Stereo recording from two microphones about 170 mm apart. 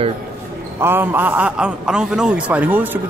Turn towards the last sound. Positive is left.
turn(degrees=-10)  # may be behind; listen again after turning